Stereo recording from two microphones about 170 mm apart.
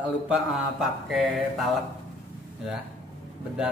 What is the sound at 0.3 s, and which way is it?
Speech, centre (ahead or behind).